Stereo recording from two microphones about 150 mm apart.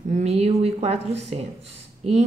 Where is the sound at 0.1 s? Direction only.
45° right (ahead or behind).